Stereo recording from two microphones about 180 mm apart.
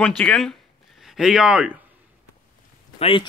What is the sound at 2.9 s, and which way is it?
Speech, 35° left (ahead or behind).